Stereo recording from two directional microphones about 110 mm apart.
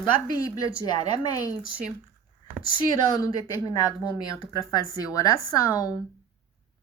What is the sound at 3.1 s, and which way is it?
A woman's voice, 35° left (ahead or behind).